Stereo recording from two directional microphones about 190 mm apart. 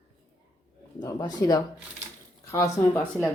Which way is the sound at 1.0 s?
20° left (ahead or behind).